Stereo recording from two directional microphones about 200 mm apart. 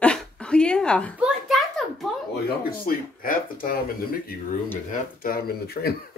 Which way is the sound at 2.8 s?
45° left (ahead or behind).